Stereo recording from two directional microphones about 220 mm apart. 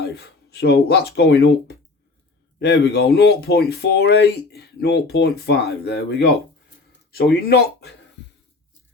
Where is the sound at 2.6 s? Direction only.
50° left (ahead or behind).